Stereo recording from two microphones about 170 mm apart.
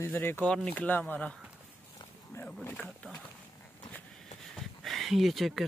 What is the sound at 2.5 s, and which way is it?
Speech, 15° left (ahead or behind).